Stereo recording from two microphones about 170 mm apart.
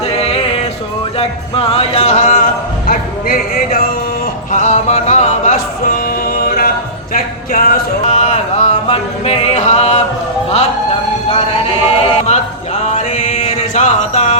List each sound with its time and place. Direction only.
0.0 s music: 35° left (ahead or behind); by 3.8 s 55° left (ahead or behind)
4.5 s music: 45° left (ahead or behind)
11.3 s music: 35° left (ahead or behind)